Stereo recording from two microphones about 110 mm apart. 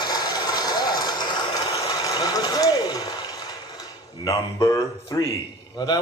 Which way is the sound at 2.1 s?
35° left (ahead or behind).